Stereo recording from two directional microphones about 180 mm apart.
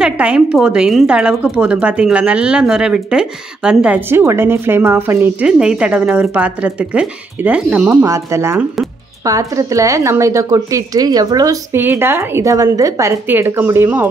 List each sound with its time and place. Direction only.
0.0 s speech: 5° right (ahead or behind)